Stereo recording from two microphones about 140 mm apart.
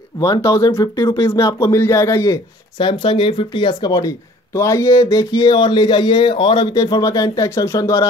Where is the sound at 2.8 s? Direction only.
35° left (ahead or behind).